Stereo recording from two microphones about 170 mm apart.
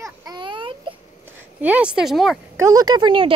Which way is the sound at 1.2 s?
10° right (ahead or behind).